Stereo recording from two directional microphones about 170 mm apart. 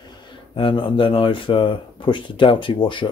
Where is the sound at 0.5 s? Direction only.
30° left (ahead or behind).